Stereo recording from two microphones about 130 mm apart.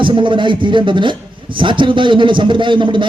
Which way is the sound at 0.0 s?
40° right (ahead or behind).